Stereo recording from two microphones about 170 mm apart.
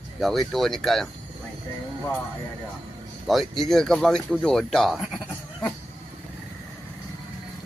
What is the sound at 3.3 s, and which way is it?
Speech, centre (ahead or behind).